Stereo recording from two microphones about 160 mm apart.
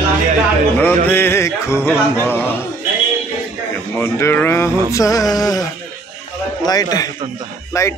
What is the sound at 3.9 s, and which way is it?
Speech, 15° left (ahead or behind).